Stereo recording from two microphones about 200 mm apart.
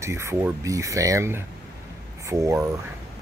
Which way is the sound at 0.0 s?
15° right (ahead or behind).